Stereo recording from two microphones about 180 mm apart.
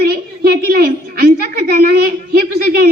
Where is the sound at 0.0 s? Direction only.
60° right (ahead or behind).